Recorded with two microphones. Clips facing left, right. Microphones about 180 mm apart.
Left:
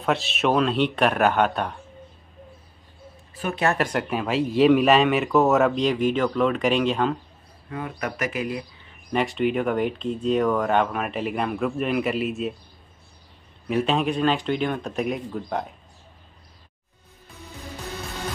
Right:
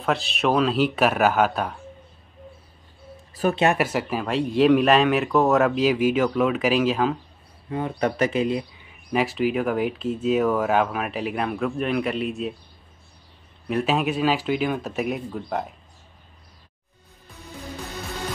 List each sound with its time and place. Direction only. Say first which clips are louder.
0.0 s speech: even; centre (ahead or behind)
3.4 s a sound: right 7 dB; 40° right (ahead or behind)
3.7 s speech: right 1 dB; 5° right (ahead or behind)
7.7 s speech: right 6 dB; 30° right (ahead or behind)
8.8 s speech: left 1 dB; 5° right (ahead or behind)
13.7 s speech: even; centre (ahead or behind)